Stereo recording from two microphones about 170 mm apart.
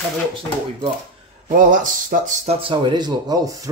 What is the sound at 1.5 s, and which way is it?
Speech, 50° right (ahead or behind).